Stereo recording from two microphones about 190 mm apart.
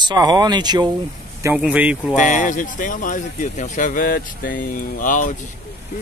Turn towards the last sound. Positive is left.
turn(degrees=45)  # may be behind; listen again after turning